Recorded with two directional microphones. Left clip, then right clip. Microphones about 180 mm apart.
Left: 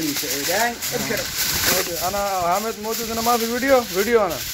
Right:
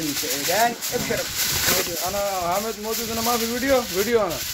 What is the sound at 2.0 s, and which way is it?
Speech, 15° left (ahead or behind).